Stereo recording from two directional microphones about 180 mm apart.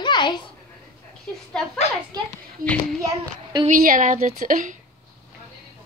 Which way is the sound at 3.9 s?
45° right (ahead or behind).